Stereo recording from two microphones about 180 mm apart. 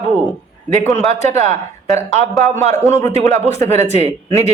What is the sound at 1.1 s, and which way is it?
Speech, 35° right (ahead or behind).